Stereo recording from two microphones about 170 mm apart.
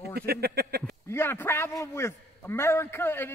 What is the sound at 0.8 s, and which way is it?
A man's voice, 15° left (ahead or behind).